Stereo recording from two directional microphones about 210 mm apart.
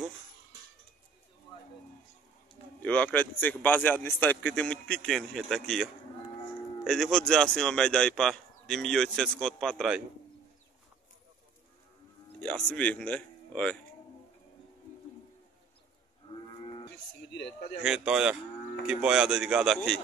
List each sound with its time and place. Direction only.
2.8 s a man's voice: 5° left (ahead or behind)
12.4 s speech: 5° left (ahead or behind)
16.3 s livestock: 25° left (ahead or behind)
17.3 s speech: 55° left (ahead or behind)
17.8 s a man's voice: 5° right (ahead or behind)